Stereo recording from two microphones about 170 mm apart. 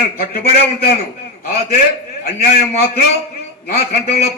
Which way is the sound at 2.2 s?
65° left (ahead or behind).